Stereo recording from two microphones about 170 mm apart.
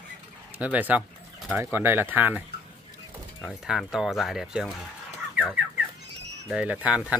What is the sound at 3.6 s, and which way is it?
Speech, centre (ahead or behind).